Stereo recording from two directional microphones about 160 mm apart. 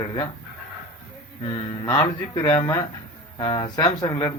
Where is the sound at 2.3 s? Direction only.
30° left (ahead or behind).